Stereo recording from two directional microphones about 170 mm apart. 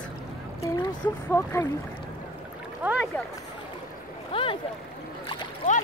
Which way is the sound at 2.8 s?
10° right (ahead or behind).